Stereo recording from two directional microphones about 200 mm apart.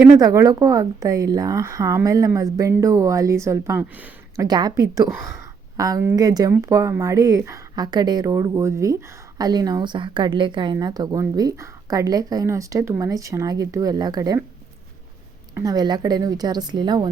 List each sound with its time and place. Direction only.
0.0 s speech: 20° right (ahead or behind)
4.4 s a woman's voice: 20° right (ahead or behind)
15.5 s a woman's voice: 20° right (ahead or behind)